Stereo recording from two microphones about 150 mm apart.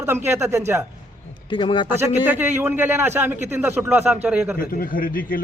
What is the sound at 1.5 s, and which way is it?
Speech, 35° left (ahead or behind).